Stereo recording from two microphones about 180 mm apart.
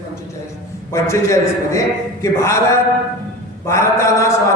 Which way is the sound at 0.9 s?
15° left (ahead or behind).